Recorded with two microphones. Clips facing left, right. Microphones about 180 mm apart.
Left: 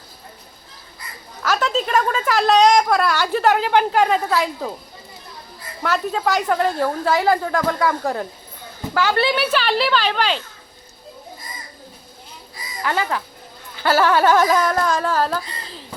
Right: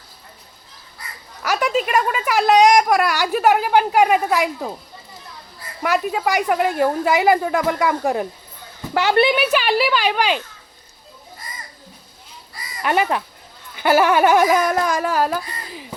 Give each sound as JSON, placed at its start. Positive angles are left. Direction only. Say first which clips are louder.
{"t": 1.5, "sound": "speech", "louder": "right 1 dB", "side_deg": -10}
{"t": 5.8, "sound": "speech", "louder": "right 1 dB", "side_deg": -10}
{"t": 12.8, "sound": "speech", "louder": "right 3 dB", "side_deg": -20}